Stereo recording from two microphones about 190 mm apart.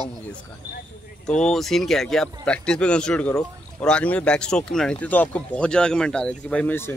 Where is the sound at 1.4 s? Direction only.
Centre (ahead or behind).